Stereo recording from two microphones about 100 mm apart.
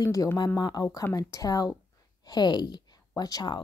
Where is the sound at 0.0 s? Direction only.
35° left (ahead or behind).